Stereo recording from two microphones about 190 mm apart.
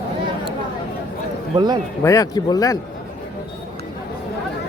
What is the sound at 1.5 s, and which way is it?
Speech, 20° right (ahead or behind).